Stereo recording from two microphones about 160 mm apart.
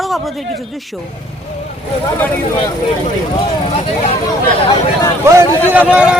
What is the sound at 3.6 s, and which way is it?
Speech, 35° left (ahead or behind).